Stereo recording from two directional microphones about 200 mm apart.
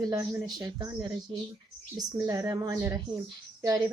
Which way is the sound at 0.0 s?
15° right (ahead or behind).